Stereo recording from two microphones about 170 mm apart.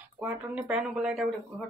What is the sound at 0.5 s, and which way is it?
Speech, 5° right (ahead or behind).